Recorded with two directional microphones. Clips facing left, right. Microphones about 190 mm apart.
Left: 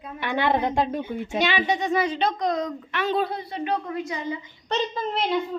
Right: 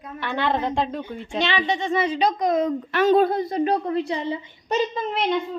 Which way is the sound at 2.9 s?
45° right (ahead or behind).